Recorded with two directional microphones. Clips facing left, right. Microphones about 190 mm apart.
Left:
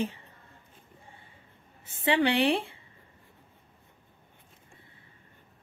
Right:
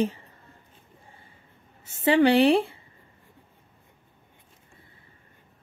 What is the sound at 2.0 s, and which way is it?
Speech, 40° right (ahead or behind).